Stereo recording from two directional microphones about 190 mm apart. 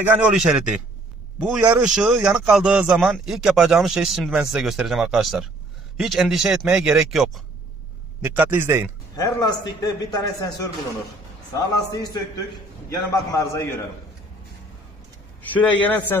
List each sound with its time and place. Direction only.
0.0 s a man's voice: 5° right (ahead or behind)
9.1 s a man's voice: 20° left (ahead or behind)
15.5 s a man's voice: 10° left (ahead or behind)